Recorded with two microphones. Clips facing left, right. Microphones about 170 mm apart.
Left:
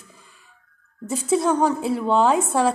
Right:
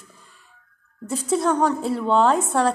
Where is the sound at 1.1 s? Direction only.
5° left (ahead or behind).